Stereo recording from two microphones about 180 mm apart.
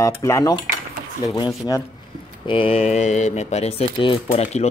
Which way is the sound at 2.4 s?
30° left (ahead or behind).